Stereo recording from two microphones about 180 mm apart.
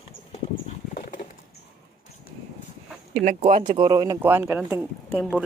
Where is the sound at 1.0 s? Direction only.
45° left (ahead or behind).